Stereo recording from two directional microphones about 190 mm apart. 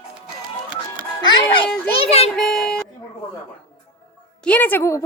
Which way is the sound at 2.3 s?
5° left (ahead or behind).